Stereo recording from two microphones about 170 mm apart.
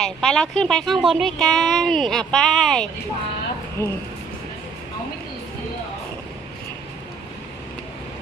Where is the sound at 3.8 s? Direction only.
15° left (ahead or behind).